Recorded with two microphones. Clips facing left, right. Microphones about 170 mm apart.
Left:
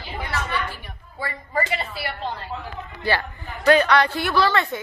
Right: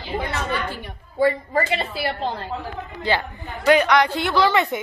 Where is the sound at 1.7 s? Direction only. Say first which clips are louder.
Right 4 dB; 30° right (ahead or behind).